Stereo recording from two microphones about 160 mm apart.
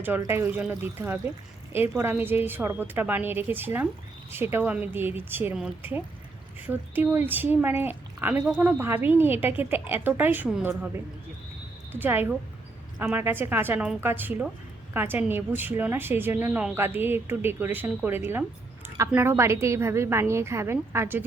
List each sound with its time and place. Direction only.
0.2 s a woman's voice: 15° right (ahead or behind)